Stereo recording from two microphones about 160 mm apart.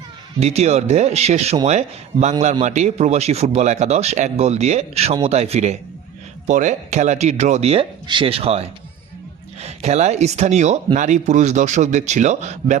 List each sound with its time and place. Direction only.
0.3 s speech: 40° right (ahead or behind)